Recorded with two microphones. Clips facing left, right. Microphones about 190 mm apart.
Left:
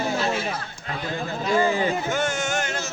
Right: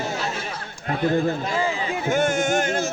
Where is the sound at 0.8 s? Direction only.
55° right (ahead or behind).